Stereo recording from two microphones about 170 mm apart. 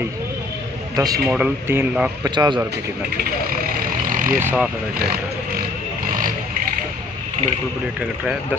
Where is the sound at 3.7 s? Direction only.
55° right (ahead or behind).